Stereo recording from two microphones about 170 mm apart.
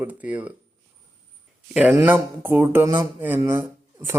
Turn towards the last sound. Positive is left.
turn(degrees=-15)  # may be behind; listen again after turning